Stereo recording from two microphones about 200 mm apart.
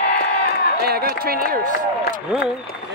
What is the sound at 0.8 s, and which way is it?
Speech, 50° right (ahead or behind).